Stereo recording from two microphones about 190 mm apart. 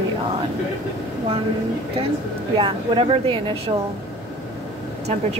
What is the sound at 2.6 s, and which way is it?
A woman's voice, 25° right (ahead or behind).